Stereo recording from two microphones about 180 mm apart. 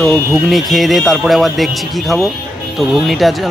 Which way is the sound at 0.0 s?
Centre (ahead or behind).